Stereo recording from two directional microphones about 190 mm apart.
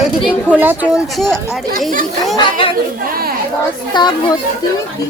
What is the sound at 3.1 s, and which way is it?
Speech, 50° right (ahead or behind).